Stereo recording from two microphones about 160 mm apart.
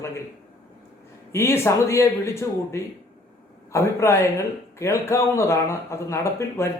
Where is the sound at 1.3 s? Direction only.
15° left (ahead or behind).